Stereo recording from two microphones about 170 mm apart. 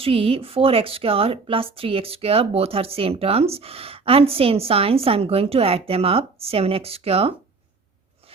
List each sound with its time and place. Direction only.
0.0 s a woman's voice: 35° right (ahead or behind)